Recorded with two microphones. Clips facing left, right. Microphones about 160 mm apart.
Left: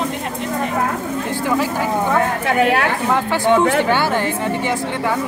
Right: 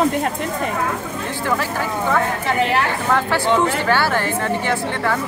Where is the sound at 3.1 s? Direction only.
15° left (ahead or behind).